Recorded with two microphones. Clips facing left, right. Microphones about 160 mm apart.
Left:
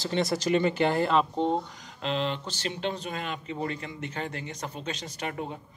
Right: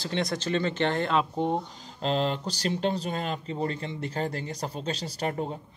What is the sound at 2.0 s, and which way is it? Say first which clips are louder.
Speech: right 3 dB; 40° right (ahead or behind).